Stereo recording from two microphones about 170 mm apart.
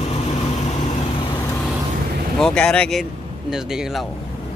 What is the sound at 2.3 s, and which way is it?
Speech, 5° left (ahead or behind).